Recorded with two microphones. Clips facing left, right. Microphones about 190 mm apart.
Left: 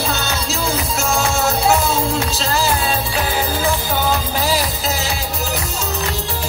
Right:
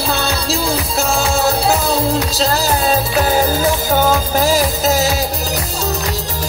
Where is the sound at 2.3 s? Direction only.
40° right (ahead or behind).